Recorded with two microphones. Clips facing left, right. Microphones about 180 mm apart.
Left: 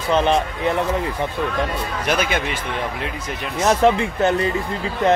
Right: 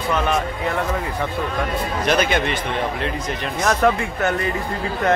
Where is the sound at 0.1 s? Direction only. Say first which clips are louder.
Left 4 dB; 25° left (ahead or behind).